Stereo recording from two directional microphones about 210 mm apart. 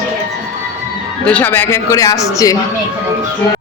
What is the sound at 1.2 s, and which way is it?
Speech, 10° left (ahead or behind).